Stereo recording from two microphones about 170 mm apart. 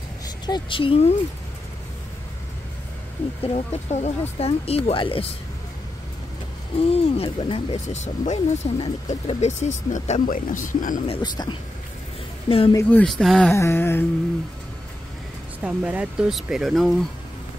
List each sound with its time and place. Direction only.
0.5 s speech: 30° left (ahead or behind)
3.5 s speech: 40° left (ahead or behind)
6.8 s speech: 35° left (ahead or behind); by 11.0 s 50° left (ahead or behind)
11.1 s speech: 25° left (ahead or behind)
13.0 s speech: centre (ahead or behind)
13.5 s a sound: 15° left (ahead or behind)
15.6 s speech: 5° right (ahead or behind)